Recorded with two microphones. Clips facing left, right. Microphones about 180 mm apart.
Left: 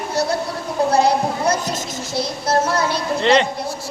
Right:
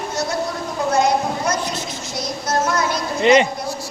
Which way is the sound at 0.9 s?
35° left (ahead or behind).